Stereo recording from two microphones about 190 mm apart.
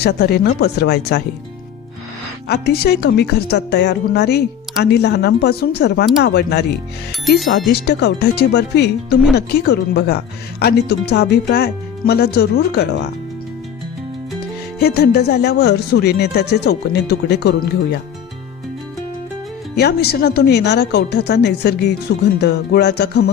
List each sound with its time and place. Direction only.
0.0 s a woman's voice: 60° left (ahead or behind)
2.5 s a woman's voice: 60° left (ahead or behind)
7.7 s a woman's voice: 65° left (ahead or behind)
14.8 s a woman's voice: 55° left (ahead or behind)
19.7 s a woman's voice: 60° left (ahead or behind)